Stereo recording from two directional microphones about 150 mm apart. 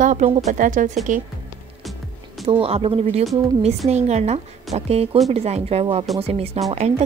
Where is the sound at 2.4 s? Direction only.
40° right (ahead or behind).